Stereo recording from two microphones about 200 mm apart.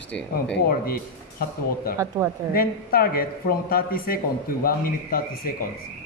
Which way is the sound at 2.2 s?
15° right (ahead or behind).